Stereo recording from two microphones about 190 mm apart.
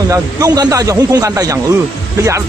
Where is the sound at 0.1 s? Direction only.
20° right (ahead or behind).